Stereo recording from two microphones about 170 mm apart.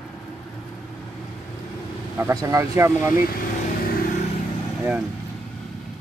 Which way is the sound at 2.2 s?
15° right (ahead or behind).